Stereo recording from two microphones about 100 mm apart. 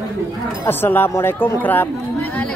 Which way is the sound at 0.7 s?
20° left (ahead or behind).